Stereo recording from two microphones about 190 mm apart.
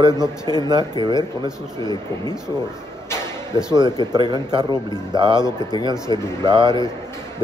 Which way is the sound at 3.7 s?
20° right (ahead or behind).